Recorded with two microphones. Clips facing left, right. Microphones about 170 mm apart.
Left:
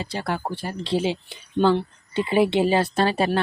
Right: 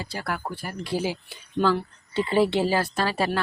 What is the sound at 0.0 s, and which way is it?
Speech, 25° left (ahead or behind).